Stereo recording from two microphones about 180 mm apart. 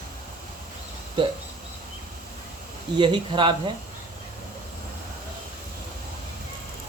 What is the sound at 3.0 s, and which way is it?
Speech, 25° right (ahead or behind).